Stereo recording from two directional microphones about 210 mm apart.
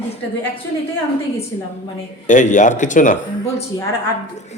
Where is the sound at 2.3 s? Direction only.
35° left (ahead or behind).